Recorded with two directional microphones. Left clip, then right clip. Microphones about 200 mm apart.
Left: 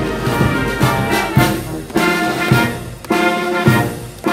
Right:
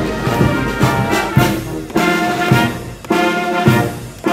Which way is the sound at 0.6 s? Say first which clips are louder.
Even; 25° left (ahead or behind).